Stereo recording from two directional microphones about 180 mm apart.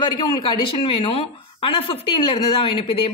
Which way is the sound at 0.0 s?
25° left (ahead or behind).